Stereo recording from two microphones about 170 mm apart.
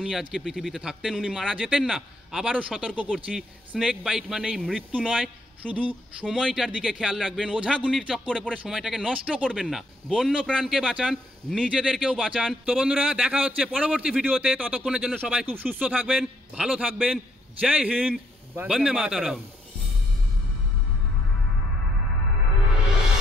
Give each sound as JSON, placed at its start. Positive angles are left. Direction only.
{"t": 0.0, "sound": "speech", "side_deg": -5}